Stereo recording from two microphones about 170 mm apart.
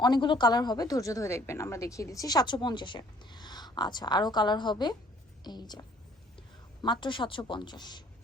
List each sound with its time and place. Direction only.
0.0 s a woman's voice: 25° left (ahead or behind)
6.8 s a woman's voice: 30° left (ahead or behind)